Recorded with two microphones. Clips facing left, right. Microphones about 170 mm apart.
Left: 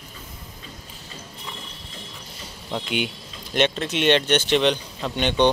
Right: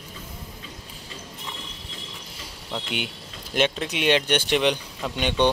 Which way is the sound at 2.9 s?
Centre (ahead or behind).